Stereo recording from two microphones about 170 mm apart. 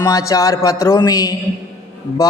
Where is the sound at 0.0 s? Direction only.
20° left (ahead or behind).